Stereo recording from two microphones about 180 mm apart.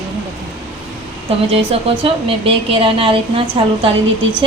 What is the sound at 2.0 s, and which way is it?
A woman's voice, 30° right (ahead or behind).